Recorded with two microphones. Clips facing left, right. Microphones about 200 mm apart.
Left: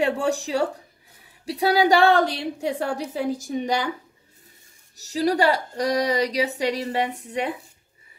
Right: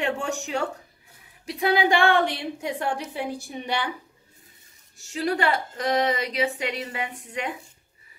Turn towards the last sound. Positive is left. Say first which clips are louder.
# left 5 dB
turn(degrees=35)  # may be behind; listen again after turning